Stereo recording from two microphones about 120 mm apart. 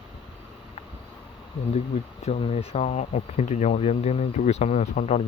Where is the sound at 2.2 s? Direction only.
60° left (ahead or behind).